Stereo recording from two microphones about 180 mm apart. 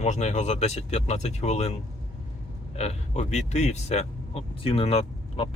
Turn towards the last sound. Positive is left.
turn(degrees=35)  # may be behind; listen again after turning